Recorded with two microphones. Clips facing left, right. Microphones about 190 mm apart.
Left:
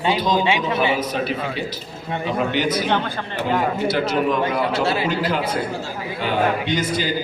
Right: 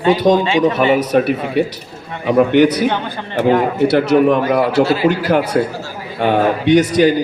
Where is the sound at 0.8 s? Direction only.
60° right (ahead or behind).